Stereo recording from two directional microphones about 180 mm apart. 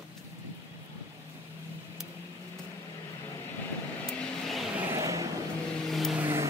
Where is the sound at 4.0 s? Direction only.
Centre (ahead or behind).